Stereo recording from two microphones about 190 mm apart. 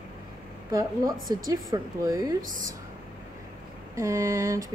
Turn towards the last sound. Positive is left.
turn(degrees=-15)  # may be behind; listen again after turning